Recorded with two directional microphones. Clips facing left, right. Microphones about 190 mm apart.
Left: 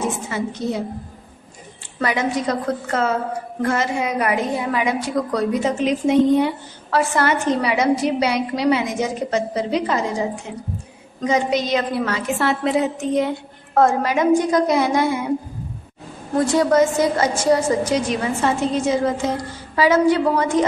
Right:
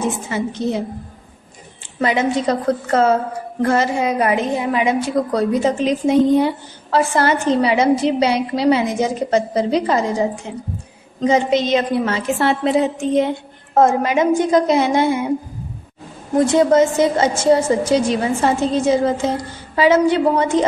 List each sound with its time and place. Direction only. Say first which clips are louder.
0.3 s a woman's voice: right 3 dB; 25° right (ahead or behind)
2.0 s a woman's voice: right 3 dB; 25° right (ahead or behind)
11.1 s a woman's voice: right 4 dB; 25° right (ahead or behind)
16.3 s a woman's voice: right 3 dB; 25° right (ahead or behind)